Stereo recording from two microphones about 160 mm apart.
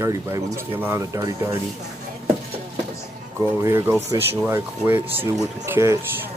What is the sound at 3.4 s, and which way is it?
Speech, 15° right (ahead or behind).